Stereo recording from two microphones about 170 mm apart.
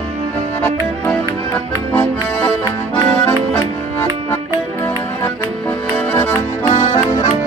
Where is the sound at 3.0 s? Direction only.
10° left (ahead or behind).